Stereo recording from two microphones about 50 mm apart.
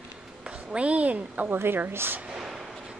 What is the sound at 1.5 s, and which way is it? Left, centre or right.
Speech, right.